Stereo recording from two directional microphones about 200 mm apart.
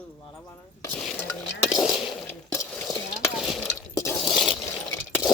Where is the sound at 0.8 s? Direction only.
5° left (ahead or behind).